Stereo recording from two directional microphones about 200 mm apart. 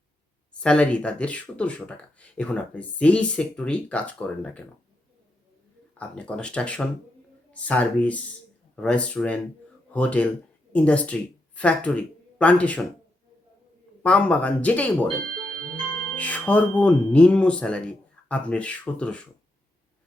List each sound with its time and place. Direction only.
0.6 s speech: 5° left (ahead or behind)
6.0 s speech: 5° left (ahead or behind)
14.0 s speech: 5° left (ahead or behind)
16.1 s speech: 5° left (ahead or behind)